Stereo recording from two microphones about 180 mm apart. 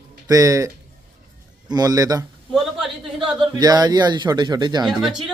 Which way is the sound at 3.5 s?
20° right (ahead or behind).